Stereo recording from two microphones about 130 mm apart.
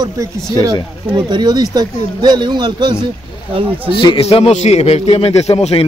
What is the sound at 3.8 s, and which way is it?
A man's voice, 40° left (ahead or behind).